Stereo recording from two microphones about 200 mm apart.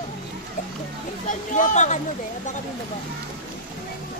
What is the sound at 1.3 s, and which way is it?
Speech, 40° left (ahead or behind).